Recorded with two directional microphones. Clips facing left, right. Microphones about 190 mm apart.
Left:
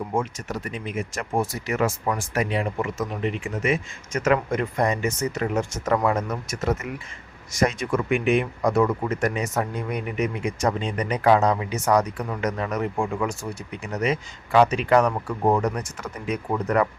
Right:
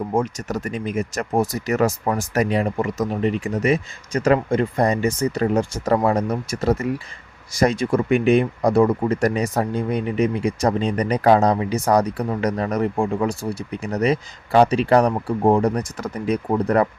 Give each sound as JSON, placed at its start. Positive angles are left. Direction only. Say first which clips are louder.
{"t": 0.1, "sound": "speech", "louder": "right 5 dB", "side_deg": -40}